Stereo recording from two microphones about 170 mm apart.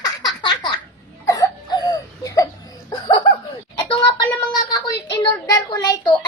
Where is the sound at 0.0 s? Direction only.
25° left (ahead or behind).